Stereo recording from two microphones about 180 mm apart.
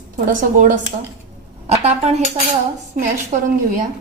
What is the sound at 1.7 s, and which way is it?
Speech, 35° right (ahead or behind).